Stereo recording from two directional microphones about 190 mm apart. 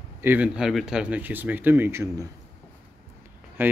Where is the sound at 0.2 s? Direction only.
10° right (ahead or behind).